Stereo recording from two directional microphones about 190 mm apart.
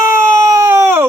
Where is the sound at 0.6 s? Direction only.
10° right (ahead or behind).